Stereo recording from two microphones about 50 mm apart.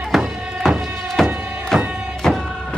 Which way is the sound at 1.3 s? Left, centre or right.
Centre.